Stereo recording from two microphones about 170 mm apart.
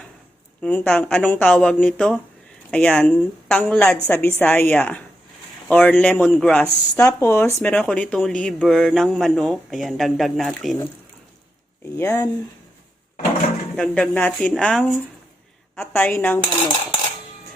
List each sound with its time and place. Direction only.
0.6 s a woman's voice: 5° left (ahead or behind)
6.9 s speech: 15° left (ahead or behind); by 10.8 s centre (ahead or behind)
11.9 s a woman's voice: 15° left (ahead or behind)
13.7 s a woman's voice: 5° left (ahead or behind)
16.4 s cutlery: 30° left (ahead or behind)